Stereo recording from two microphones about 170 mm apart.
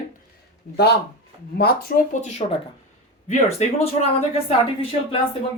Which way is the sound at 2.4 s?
40° left (ahead or behind).